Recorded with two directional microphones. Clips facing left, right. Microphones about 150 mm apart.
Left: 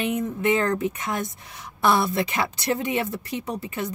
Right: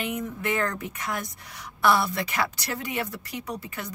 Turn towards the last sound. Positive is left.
turn(degrees=25)  # may be behind; listen again after turning